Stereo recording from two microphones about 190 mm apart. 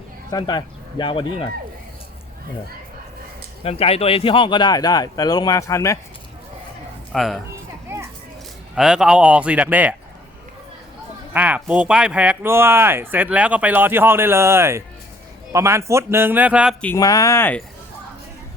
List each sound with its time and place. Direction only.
0.3 s speech: 20° left (ahead or behind)
3.6 s speech: 30° left (ahead or behind); by 6.0 s 15° left (ahead or behind)
7.1 s speech: centre (ahead or behind)
7.9 s children playing: 10° right (ahead or behind)
8.7 s speech: 5° right (ahead or behind)
11.3 s speech: 5° right (ahead or behind)
16.8 s speech: 15° left (ahead or behind)